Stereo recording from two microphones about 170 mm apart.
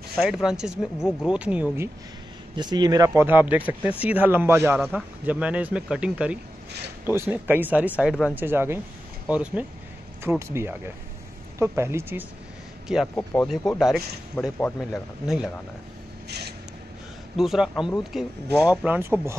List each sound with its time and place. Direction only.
0.2 s speech: 5° right (ahead or behind)
2.5 s speech: 25° right (ahead or behind); by 8.4 s centre (ahead or behind)
8.4 s speech: 15° right (ahead or behind)
12.8 s speech: 5° right (ahead or behind)
13.1 s speech: 10° left (ahead or behind)
13.5 s speech: centre (ahead or behind)
14.6 s speech: 10° left (ahead or behind)
15.2 s speech: centre (ahead or behind)
16.3 s a sound: 75° right (ahead or behind)
17.4 s speech: centre (ahead or behind)